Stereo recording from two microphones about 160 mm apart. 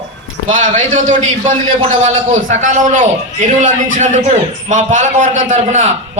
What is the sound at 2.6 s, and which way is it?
A man's voice, 50° right (ahead or behind).